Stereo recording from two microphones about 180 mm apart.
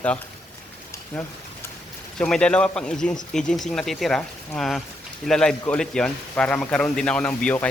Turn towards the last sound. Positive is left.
turn(degrees=5)  # may be behind; listen again after turning